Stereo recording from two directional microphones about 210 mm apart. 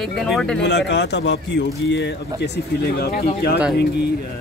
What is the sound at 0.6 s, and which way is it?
A man's voice, 55° left (ahead or behind).